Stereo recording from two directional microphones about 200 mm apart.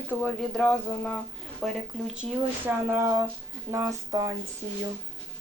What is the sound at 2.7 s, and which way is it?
Speech, 15° right (ahead or behind).